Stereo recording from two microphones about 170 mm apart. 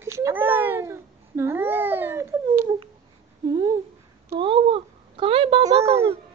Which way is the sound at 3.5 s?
20° right (ahead or behind).